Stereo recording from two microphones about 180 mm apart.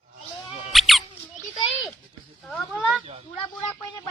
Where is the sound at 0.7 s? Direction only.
Centre (ahead or behind).